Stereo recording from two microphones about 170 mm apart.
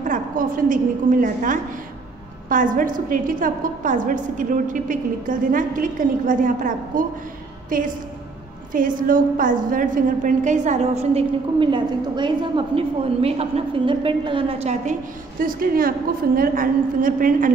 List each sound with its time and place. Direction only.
0.0 s a woman's voice: 50° right (ahead or behind)
15.4 s a woman's voice: 60° right (ahead or behind)